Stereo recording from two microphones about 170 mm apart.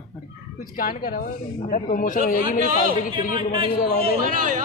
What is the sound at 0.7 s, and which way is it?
A woman's voice, 55° left (ahead or behind).